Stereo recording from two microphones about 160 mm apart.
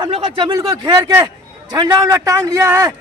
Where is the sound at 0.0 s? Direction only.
30° right (ahead or behind).